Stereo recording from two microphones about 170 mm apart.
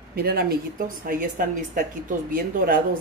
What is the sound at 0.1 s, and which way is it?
Speech, 65° right (ahead or behind).